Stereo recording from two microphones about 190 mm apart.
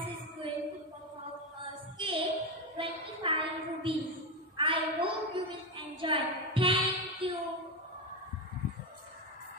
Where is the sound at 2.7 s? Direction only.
30° right (ahead or behind).